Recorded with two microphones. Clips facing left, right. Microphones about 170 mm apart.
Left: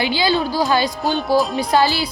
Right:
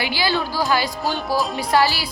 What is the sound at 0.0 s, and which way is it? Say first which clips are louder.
Speech: left 4 dB; 20° left (ahead or behind).